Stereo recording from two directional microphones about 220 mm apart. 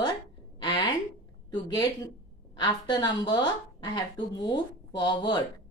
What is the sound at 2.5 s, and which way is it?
A woman's voice, 20° left (ahead or behind).